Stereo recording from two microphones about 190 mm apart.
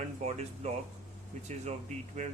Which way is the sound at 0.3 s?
35° right (ahead or behind).